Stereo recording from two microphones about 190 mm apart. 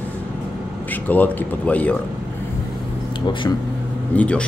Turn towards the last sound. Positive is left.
turn(degrees=5)  # may be behind; listen again after turning